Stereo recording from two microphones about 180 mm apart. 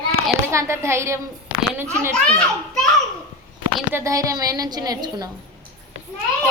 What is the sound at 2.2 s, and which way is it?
Speech, 5° left (ahead or behind).